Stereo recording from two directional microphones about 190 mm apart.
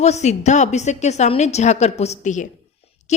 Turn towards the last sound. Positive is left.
turn(degrees=35)  # may be behind; listen again after turning